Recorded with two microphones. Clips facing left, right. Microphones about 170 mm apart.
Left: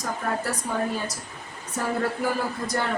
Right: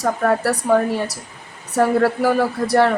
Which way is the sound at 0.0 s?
75° right (ahead or behind).